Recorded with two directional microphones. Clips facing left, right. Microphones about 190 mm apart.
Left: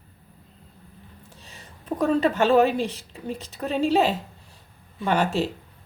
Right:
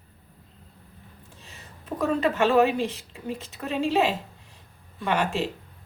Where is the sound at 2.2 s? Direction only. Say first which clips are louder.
Left 1 dB; 30° left (ahead or behind).